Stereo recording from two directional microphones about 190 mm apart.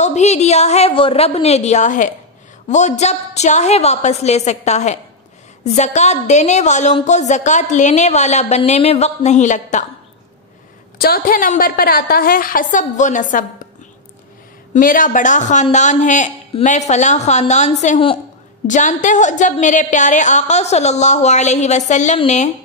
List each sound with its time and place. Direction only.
0.0 s a woman's voice: 35° left (ahead or behind)
11.0 s a woman's voice: 50° left (ahead or behind)
14.7 s a woman's voice: 45° left (ahead or behind)